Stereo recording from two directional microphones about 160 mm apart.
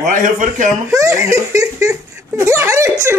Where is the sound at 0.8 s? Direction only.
20° right (ahead or behind).